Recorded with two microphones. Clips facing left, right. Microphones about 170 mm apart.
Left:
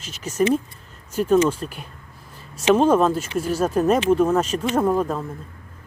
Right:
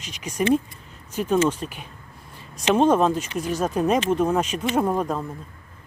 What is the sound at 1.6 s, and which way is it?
Speech, 5° right (ahead or behind).